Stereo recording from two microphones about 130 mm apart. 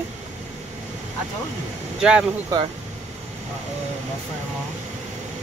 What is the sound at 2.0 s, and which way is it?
Speech, 5° right (ahead or behind).